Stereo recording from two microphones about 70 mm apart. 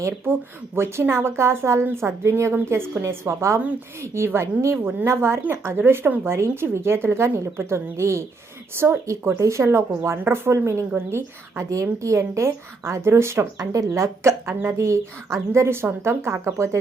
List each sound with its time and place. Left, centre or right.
0.8 s a woman's voice: right
13.6 s a woman's voice: right